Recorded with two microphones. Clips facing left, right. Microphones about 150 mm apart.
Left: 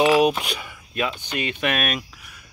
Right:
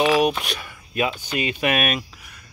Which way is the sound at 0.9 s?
5° right (ahead or behind).